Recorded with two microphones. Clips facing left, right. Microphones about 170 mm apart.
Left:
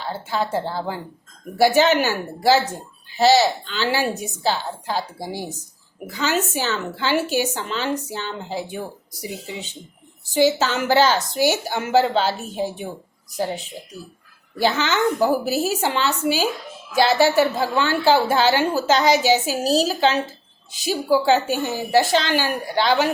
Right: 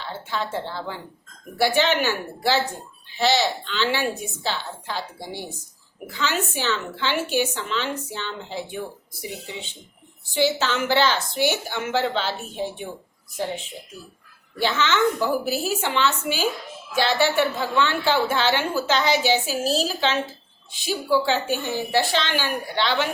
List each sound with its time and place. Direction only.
0.0 s a woman's voice: 40° left (ahead or behind)
10.3 s a woman's voice: 40° left (ahead or behind)